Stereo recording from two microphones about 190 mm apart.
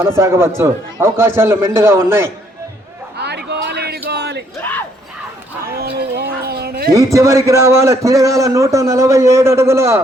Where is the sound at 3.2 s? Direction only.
60° right (ahead or behind).